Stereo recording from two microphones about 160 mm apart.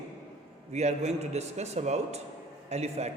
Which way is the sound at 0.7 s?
45° right (ahead or behind).